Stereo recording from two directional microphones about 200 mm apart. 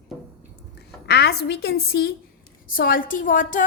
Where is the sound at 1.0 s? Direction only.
55° left (ahead or behind).